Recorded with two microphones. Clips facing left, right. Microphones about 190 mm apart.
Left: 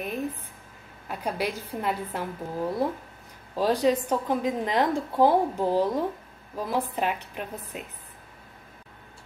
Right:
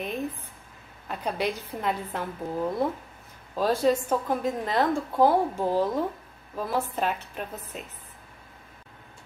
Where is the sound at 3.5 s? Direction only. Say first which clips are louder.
Even; 15° left (ahead or behind).